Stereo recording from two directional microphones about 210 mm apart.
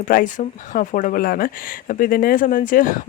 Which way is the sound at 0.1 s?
40° left (ahead or behind).